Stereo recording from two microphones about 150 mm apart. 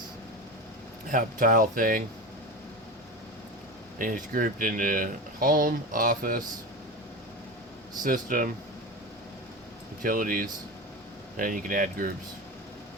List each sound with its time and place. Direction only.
1.0 s speech: 60° right (ahead or behind)
3.9 s speech: 65° right (ahead or behind)
8.0 s speech: 65° right (ahead or behind)
10.0 s speech: 70° right (ahead or behind)